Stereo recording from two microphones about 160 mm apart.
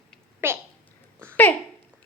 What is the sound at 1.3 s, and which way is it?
Speech, 10° left (ahead or behind).